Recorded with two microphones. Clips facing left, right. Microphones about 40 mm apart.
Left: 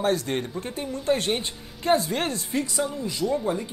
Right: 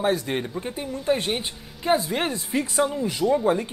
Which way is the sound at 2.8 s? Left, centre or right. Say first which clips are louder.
Right 4 dB; right.